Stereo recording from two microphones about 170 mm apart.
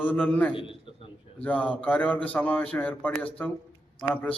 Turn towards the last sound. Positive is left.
turn(degrees=10)  # may be behind; listen again after turning